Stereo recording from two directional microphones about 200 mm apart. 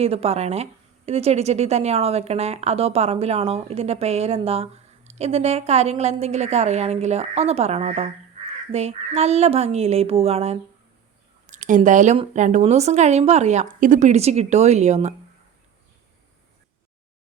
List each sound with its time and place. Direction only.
0.0 s a woman's voice: 30° right (ahead or behind)